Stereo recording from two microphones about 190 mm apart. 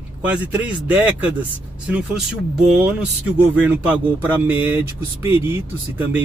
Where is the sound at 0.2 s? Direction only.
5° right (ahead or behind).